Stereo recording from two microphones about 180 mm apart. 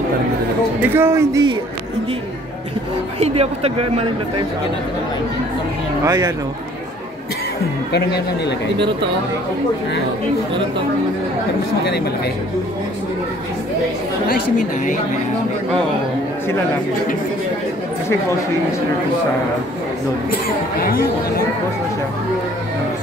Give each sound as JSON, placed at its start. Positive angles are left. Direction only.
{"t": 0.8, "sound": "a man's voice", "side_deg": -10}
{"t": 3.2, "sound": "speech", "side_deg": -35}
{"t": 6.0, "sound": "speech", "side_deg": -20}
{"t": 7.9, "sound": "speech", "side_deg": 65}
{"t": 14.2, "sound": "speech", "side_deg": 45}
{"t": 20.8, "sound": "speech", "side_deg": 55}